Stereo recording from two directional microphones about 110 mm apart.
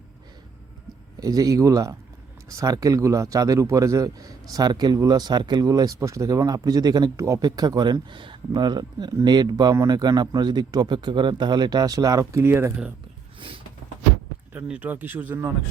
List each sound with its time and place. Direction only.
1.2 s a man's voice: 35° right (ahead or behind)
14.5 s speech: 15° right (ahead or behind)